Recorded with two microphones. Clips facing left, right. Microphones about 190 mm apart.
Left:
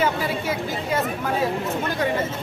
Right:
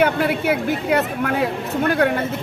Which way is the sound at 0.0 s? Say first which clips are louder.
Right 5 dB; 65° right (ahead or behind).